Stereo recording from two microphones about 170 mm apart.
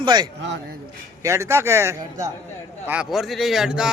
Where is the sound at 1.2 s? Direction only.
15° right (ahead or behind).